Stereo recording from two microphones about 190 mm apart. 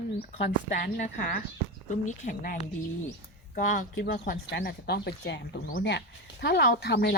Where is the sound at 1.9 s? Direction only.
40° left (ahead or behind); by 7.1 s 60° left (ahead or behind).